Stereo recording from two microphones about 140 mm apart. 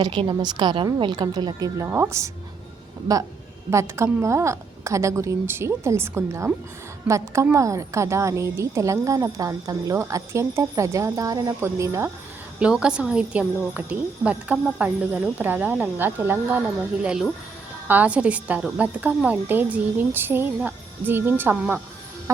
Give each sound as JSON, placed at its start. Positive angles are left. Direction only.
{"t": 0.0, "sound": "a woman's voice", "side_deg": -35}
{"t": 3.7, "sound": "a woman's voice", "side_deg": -20}
{"t": 12.5, "sound": "a woman's voice", "side_deg": -5}